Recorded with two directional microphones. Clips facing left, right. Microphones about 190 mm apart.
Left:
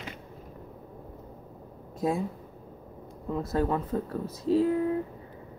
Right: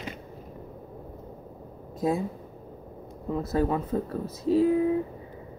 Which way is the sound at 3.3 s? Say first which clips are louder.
Right 2 dB; 5° right (ahead or behind).